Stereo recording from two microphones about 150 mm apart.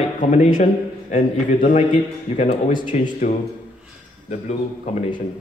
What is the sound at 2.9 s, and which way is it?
A man's voice, 55° left (ahead or behind).